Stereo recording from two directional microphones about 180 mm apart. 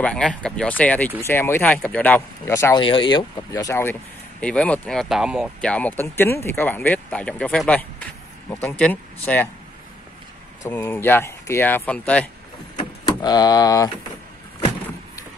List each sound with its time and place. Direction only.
0.0 s speech: 5° left (ahead or behind)
2.8 s speech: 25° left (ahead or behind)
4.4 s speech: 5° left (ahead or behind)
10.6 s speech: 15° left (ahead or behind)
12.7 s vehicle: 20° left (ahead or behind)